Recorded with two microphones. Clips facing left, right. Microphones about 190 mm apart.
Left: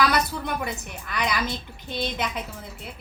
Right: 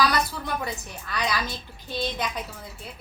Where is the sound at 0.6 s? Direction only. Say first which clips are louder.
Left 1 dB; 20° left (ahead or behind).